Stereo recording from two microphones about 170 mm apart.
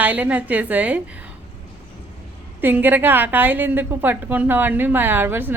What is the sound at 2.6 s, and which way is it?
A woman's voice, 10° right (ahead or behind).